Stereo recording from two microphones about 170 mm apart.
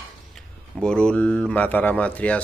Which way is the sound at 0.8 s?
5° left (ahead or behind).